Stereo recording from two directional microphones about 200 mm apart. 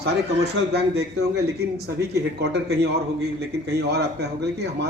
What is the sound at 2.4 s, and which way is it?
A man's voice, 55° right (ahead or behind).